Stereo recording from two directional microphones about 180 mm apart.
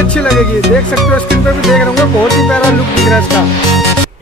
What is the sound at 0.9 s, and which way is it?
Speech, centre (ahead or behind).